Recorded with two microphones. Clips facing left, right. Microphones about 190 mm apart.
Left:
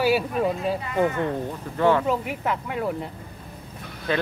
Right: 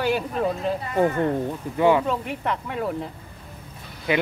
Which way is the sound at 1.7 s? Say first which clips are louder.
Right 1 dB; 15° right (ahead or behind).